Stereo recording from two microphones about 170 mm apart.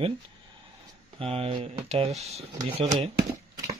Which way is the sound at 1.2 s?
35° right (ahead or behind).